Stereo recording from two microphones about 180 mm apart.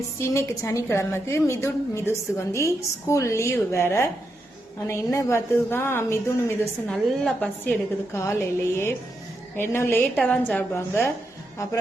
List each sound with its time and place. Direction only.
0.2 s a woman's voice: 15° left (ahead or behind)